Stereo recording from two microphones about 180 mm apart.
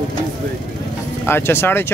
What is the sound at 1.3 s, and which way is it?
Speech, 15° left (ahead or behind).